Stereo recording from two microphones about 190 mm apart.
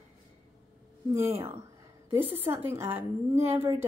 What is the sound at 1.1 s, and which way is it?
Speech, 15° right (ahead or behind).